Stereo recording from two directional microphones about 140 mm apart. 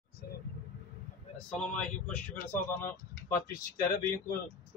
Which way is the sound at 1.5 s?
5° left (ahead or behind).